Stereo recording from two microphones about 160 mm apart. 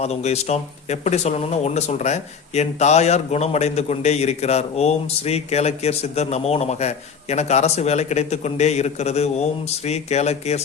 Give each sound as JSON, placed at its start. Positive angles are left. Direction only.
{"t": 0.0, "sound": "speech", "side_deg": 45}